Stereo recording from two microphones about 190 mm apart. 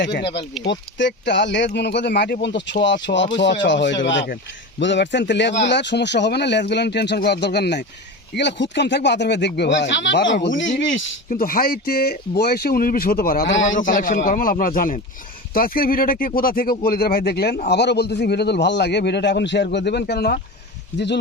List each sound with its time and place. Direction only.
0.0 s a man's voice: 65° left (ahead or behind)
11.3 s a man's voice: 50° left (ahead or behind)